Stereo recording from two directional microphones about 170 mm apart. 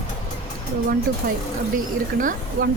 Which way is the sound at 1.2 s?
70° right (ahead or behind).